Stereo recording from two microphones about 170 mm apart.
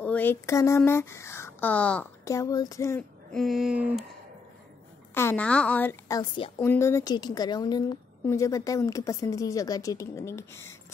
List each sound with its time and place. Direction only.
0.0 s speech: 10° left (ahead or behind)
2.2 s a woman's voice: 20° left (ahead or behind)
3.3 s speech: centre (ahead or behind)
5.1 s a woman's voice: 10° left (ahead or behind)